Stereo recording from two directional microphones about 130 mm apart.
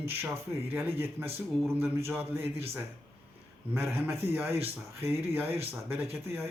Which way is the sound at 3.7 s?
20° right (ahead or behind).